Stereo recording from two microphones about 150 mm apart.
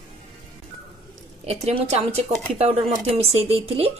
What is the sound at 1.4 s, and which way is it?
Speech, 45° right (ahead or behind).